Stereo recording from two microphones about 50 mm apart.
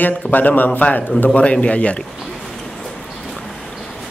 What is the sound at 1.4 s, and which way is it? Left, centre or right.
Speech, left.